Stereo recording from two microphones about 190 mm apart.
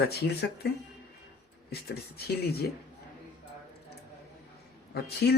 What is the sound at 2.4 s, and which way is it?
Speech, 55° left (ahead or behind).